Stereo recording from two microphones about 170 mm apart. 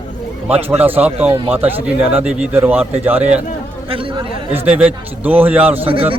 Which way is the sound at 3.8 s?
30° right (ahead or behind).